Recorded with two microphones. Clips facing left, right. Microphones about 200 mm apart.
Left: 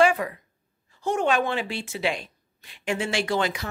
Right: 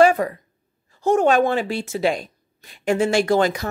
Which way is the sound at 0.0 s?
40° right (ahead or behind).